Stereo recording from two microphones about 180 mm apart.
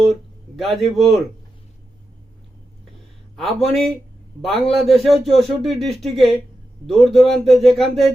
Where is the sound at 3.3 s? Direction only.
Centre (ahead or behind).